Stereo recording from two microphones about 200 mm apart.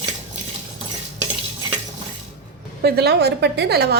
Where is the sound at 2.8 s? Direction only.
55° right (ahead or behind).